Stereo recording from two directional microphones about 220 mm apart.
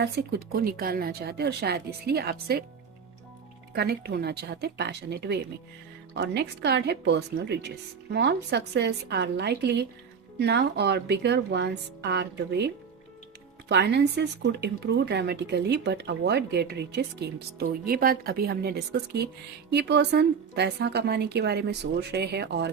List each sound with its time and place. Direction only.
0.0 s speech: 45° right (ahead or behind)
3.8 s speech: 45° right (ahead or behind)